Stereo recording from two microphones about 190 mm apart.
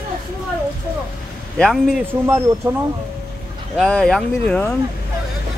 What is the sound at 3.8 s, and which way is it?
Speech, 5° left (ahead or behind).